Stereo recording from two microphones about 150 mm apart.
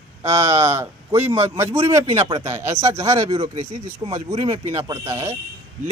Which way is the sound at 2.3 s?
20° right (ahead or behind).